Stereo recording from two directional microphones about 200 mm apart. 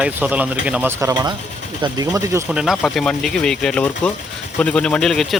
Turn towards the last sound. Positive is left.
turn(degrees=0)  # may be behind; listen again after turning